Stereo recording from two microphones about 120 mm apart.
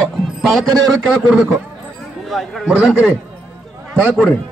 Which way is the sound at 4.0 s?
15° right (ahead or behind).